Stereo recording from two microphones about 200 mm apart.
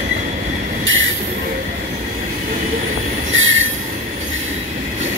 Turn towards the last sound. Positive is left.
turn(degrees=-75)  # may be behind; listen again after turning